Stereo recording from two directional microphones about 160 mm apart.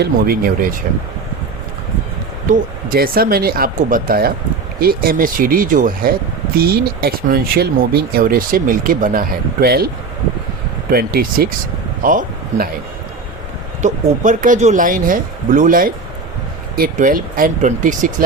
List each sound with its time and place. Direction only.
0.0 s speech: 70° right (ahead or behind)
2.5 s speech: 65° right (ahead or behind)
10.9 s a man's voice: 65° right (ahead or behind)
13.8 s speech: 55° right (ahead or behind)